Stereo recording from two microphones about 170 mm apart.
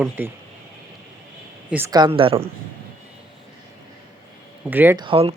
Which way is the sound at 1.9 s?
30° right (ahead or behind).